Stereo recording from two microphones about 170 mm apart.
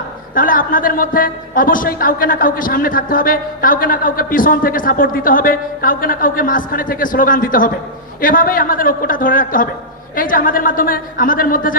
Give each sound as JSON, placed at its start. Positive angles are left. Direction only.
{"t": 0.3, "sound": "a man's voice", "side_deg": 55}